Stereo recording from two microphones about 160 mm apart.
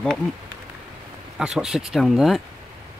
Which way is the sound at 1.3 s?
5° right (ahead or behind).